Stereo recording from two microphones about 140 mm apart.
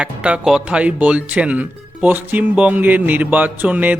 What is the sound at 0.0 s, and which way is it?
Speech, 10° right (ahead or behind).